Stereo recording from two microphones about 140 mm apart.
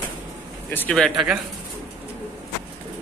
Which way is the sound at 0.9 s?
Centre (ahead or behind).